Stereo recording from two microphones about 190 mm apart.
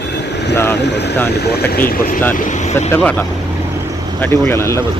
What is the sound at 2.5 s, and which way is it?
Speech, 35° left (ahead or behind).